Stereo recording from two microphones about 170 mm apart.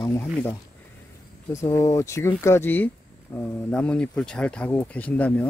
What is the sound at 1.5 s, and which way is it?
Speech, 15° left (ahead or behind).